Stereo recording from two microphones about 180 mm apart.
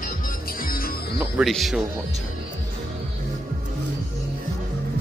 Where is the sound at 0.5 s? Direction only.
55° left (ahead or behind).